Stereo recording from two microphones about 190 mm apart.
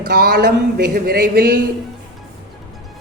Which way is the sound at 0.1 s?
55° right (ahead or behind).